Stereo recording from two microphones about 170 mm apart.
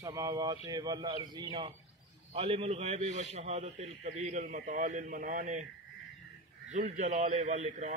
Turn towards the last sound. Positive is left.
turn(degrees=-45)  # may be behind; listen again after turning